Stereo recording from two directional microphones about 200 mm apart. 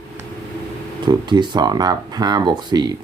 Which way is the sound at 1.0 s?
20° right (ahead or behind).